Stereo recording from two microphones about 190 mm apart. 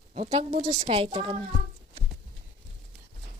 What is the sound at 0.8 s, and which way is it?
Speech, 30° right (ahead or behind).